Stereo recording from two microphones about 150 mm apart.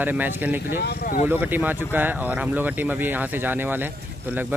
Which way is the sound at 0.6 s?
90° left.